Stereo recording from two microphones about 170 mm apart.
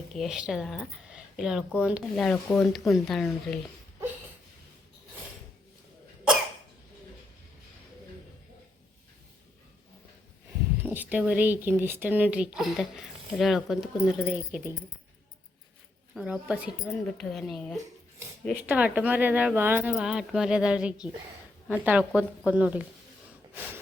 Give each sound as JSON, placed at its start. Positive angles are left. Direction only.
{"t": 0.1, "sound": "speech", "side_deg": 0}
{"t": 2.1, "sound": "speech", "side_deg": 5}
{"t": 10.8, "sound": "speech", "side_deg": -10}
{"t": 16.1, "sound": "speech", "side_deg": -5}
{"t": 18.6, "sound": "speech", "side_deg": -10}